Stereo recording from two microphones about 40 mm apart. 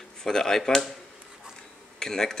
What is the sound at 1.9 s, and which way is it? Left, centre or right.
Speech, centre.